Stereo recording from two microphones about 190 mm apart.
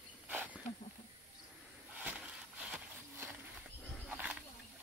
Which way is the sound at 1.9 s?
10° right (ahead or behind).